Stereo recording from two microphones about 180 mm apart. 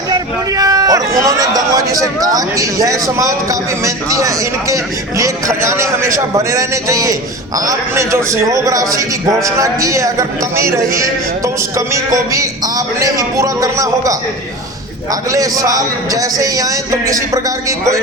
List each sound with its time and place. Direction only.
0.1 s a man's voice: 20° right (ahead or behind)
15.3 s a man's voice: 20° right (ahead or behind)